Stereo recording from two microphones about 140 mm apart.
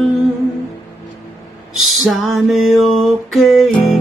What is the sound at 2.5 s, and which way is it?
Music, centre (ahead or behind).